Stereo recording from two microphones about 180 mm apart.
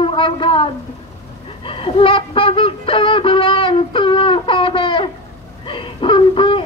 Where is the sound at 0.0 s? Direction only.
30° left (ahead or behind).